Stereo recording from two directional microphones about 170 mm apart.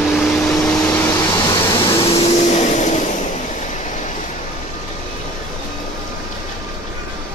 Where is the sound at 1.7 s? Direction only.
30° left (ahead or behind).